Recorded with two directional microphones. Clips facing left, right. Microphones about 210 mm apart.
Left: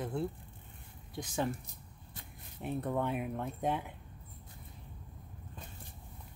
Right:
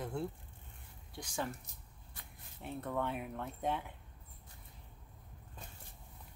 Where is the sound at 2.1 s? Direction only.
20° left (ahead or behind).